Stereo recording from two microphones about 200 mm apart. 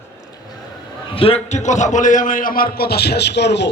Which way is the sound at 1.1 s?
30° left (ahead or behind).